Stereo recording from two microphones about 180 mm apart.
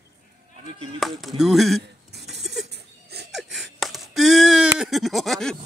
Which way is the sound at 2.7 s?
65° right (ahead or behind).